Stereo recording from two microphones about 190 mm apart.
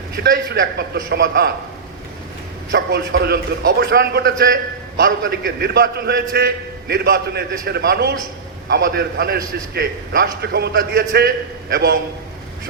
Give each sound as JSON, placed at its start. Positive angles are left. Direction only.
{"t": 0.2, "sound": "a man's voice", "side_deg": -55}
{"t": 2.7, "sound": "a man's voice", "side_deg": -60}